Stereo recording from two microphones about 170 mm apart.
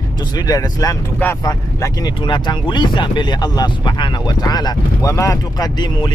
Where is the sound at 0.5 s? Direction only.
20° left (ahead or behind).